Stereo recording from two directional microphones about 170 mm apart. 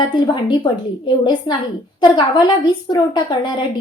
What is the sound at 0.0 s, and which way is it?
A child's voice, 30° left (ahead or behind).